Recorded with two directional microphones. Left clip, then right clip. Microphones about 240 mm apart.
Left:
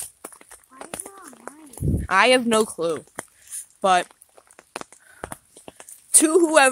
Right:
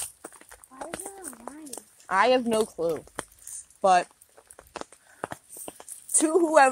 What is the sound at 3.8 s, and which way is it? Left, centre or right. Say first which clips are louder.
Speech: left 2 dB; left.